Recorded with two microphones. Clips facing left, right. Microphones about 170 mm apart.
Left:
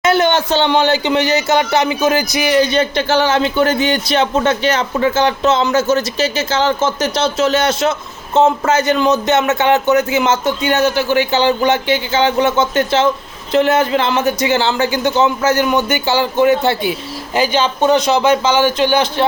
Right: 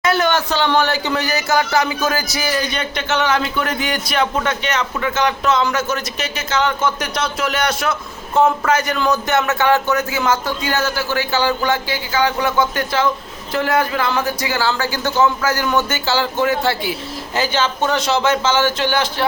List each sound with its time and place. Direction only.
0.0 s speech: 25° left (ahead or behind)